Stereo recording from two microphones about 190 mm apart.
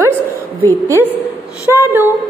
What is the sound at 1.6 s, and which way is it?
Speech, 10° right (ahead or behind).